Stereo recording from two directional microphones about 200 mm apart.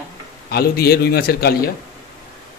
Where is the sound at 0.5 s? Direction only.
50° left (ahead or behind).